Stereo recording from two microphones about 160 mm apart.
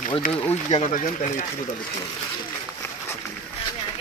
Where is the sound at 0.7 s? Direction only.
50° left (ahead or behind).